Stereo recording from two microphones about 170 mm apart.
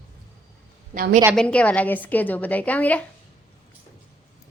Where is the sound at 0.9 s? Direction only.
55° right (ahead or behind).